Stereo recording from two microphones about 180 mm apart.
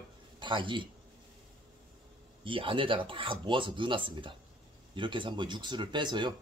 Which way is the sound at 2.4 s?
30° right (ahead or behind).